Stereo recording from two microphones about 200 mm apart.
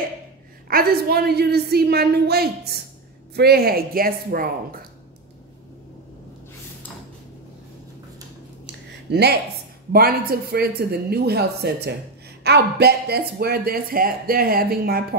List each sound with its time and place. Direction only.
0.7 s speech: 50° right (ahead or behind)
8.6 s a sound: 55° right (ahead or behind)
9.9 s speech: 50° right (ahead or behind)